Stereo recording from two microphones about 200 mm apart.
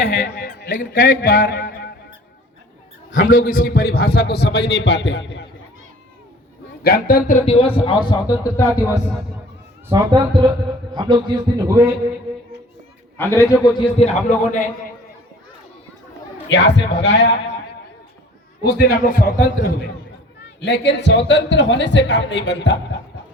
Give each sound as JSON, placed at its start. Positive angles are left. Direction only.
{"t": 0.0, "sound": "a man's voice", "side_deg": 60}
{"t": 3.2, "sound": "a man's voice", "side_deg": 45}
{"t": 6.8, "sound": "a man's voice", "side_deg": 45}
{"t": 9.9, "sound": "a man's voice", "side_deg": -15}
{"t": 13.1, "sound": "speech", "side_deg": 15}
{"t": 13.7, "sound": "a man's voice", "side_deg": 30}
{"t": 16.5, "sound": "a man's voice", "side_deg": 60}
{"t": 18.8, "sound": "a man's voice", "side_deg": 45}
{"t": 20.6, "sound": "a man's voice", "side_deg": 60}